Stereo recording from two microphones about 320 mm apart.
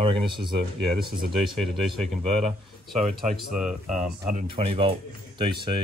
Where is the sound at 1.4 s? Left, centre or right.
Centre.